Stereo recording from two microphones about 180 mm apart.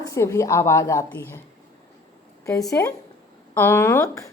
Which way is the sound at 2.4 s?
20° left (ahead or behind).